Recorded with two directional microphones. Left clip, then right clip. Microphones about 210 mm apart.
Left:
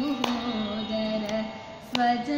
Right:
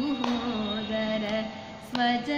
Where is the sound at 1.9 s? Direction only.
45° left (ahead or behind).